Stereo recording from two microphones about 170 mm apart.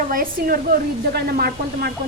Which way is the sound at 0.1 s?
55° right (ahead or behind).